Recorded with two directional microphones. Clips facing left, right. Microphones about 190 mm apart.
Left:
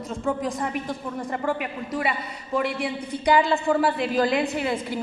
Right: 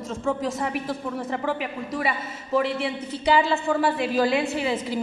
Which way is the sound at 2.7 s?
15° left (ahead or behind).